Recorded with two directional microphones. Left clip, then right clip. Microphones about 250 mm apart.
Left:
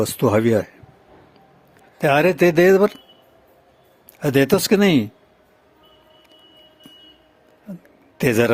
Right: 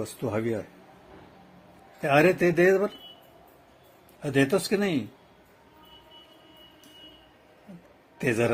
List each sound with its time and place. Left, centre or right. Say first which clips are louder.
0.0 s speech: left 12 dB; left
2.0 s speech: left 6 dB; left
4.2 s speech: left 8 dB; left
8.2 s speech: left 8 dB; left